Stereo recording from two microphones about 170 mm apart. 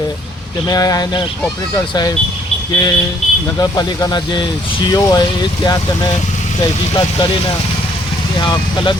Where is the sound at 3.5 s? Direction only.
25° left (ahead or behind).